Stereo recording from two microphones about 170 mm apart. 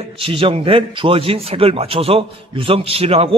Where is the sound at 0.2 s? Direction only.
30° right (ahead or behind).